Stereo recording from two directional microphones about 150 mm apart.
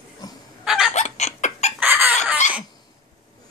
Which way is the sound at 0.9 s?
50° left (ahead or behind).